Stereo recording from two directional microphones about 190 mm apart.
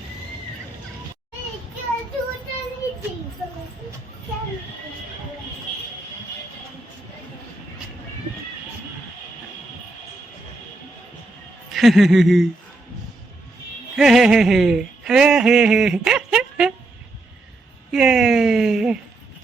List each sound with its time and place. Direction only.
11.7 s speech: centre (ahead or behind)
13.9 s a sound: centre (ahead or behind)
17.9 s speech: 5° right (ahead or behind)